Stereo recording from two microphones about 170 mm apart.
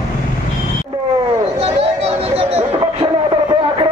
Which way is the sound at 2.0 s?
35° right (ahead or behind).